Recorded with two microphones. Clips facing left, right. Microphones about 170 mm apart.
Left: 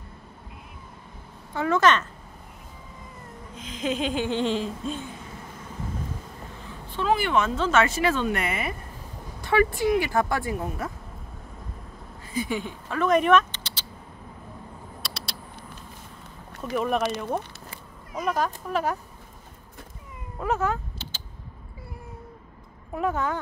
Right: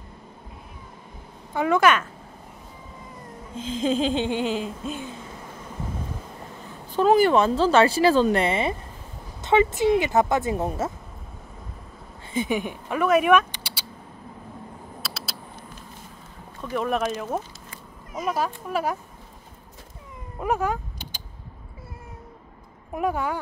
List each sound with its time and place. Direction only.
1.5 s speech: 15° right (ahead or behind)
3.5 s speech: 30° right (ahead or behind)
4.3 s laughter: 5° right (ahead or behind)
6.9 s speech: 40° right (ahead or behind)
12.4 s speech: 20° right (ahead or behind)
15.0 s a sound: 5° right (ahead or behind)
16.7 s laughter: centre (ahead or behind)
18.1 s speech: 5° right (ahead or behind)
20.3 s a sound: 15° right (ahead or behind)
22.9 s speech: 10° right (ahead or behind)